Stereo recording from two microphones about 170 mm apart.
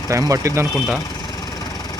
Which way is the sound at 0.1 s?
20° right (ahead or behind).